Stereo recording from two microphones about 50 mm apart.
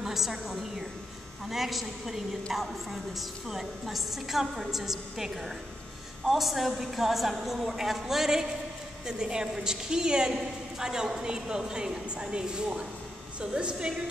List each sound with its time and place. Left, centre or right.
0.0 s a woman's voice: centre